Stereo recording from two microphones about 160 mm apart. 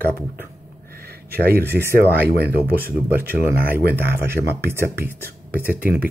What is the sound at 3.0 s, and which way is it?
Speech, 10° right (ahead or behind).